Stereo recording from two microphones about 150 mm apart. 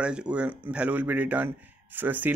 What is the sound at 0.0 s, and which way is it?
Speech, 5° right (ahead or behind).